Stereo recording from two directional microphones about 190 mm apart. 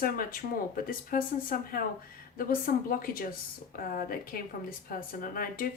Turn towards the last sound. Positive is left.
turn(degrees=50)  # may be behind; listen again after turning